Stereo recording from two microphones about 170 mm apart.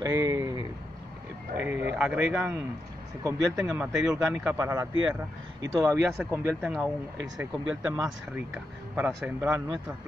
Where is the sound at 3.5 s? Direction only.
10° right (ahead or behind).